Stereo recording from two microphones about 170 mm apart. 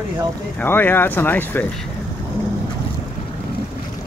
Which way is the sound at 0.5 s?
10° left (ahead or behind).